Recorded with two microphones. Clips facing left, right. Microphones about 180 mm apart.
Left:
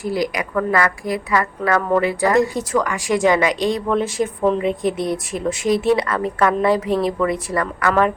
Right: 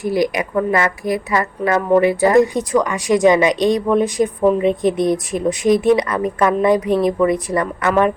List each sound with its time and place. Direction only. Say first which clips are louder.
0.0 s a woman's voice: right 4 dB; 25° right (ahead or behind)